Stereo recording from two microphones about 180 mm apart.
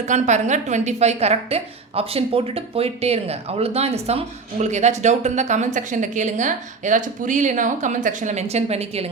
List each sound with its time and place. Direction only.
0.0 s a woman's voice: 40° right (ahead or behind)